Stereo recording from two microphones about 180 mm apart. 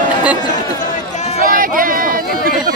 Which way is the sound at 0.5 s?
45° left (ahead or behind).